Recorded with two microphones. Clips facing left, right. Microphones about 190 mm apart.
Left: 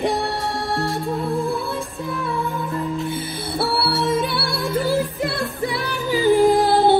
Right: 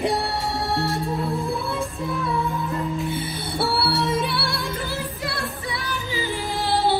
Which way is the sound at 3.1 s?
Centre (ahead or behind).